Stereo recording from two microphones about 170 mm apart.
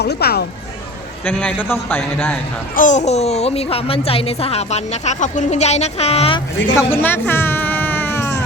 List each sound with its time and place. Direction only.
0.0 s speech: 70° left (ahead or behind)
1.2 s speech: 10° left (ahead or behind)
2.7 s a woman's voice: 45° left (ahead or behind)
6.7 s a sound: 10° left (ahead or behind)